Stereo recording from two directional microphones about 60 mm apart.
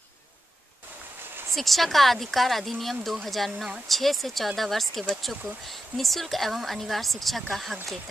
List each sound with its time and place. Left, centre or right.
1.5 s speech: centre